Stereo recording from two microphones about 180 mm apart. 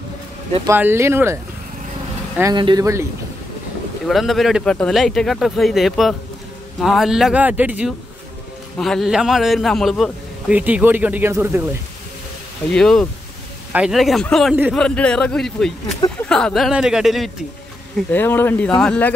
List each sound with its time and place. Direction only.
0.7 s speech: 15° right (ahead or behind)
2.5 s speech: 25° right (ahead or behind)
4.1 s a man's voice: centre (ahead or behind)
8.7 s a man's voice: centre (ahead or behind); by 11.6 s 15° right (ahead or behind)
12.7 s a man's voice: 5° left (ahead or behind)
14.8 s a man's voice: 5° left (ahead or behind)
18.1 s speech: 10° left (ahead or behind)